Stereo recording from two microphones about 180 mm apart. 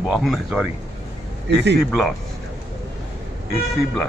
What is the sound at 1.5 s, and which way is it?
Speech, 70° right (ahead or behind).